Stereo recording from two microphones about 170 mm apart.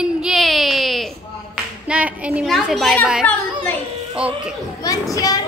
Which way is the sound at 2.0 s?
10° right (ahead or behind).